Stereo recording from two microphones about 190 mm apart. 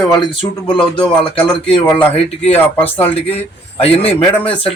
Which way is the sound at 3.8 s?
30° left (ahead or behind).